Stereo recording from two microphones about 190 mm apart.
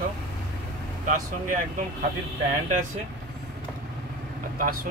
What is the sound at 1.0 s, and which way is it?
Speech, 45° right (ahead or behind).